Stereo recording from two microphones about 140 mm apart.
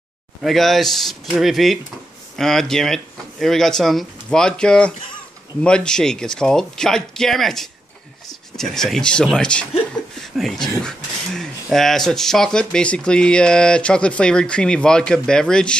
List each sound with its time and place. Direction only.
0.4 s speech: centre (ahead or behind)
10.2 s a sound: centre (ahead or behind)
10.8 s speech: 5° left (ahead or behind)